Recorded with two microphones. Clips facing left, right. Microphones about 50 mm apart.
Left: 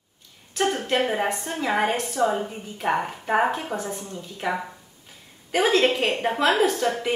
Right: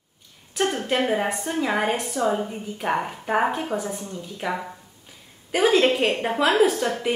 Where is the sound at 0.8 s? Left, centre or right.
Centre.